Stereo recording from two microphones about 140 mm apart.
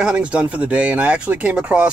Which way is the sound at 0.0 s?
10° right (ahead or behind).